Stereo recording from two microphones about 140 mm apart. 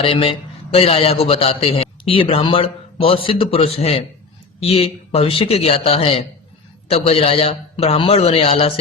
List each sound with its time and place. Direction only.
0.0 s a man's voice: 40° left (ahead or behind)